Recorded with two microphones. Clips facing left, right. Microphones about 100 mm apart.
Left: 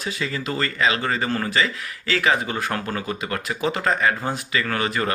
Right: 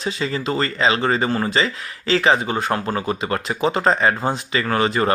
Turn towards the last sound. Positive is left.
turn(degrees=-30)  # may be behind; listen again after turning